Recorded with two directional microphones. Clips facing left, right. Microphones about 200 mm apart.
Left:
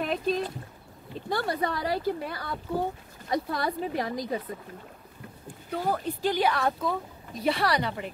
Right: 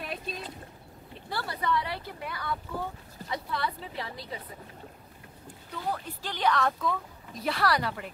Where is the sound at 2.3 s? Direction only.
50° left (ahead or behind).